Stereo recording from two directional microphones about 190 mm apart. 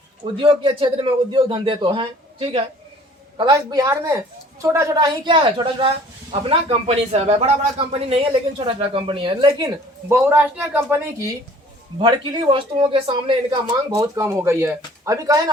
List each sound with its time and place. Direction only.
0.4 s a man's voice: 25° right (ahead or behind); by 11.0 s 10° right (ahead or behind)
11.9 s a man's voice: 25° right (ahead or behind)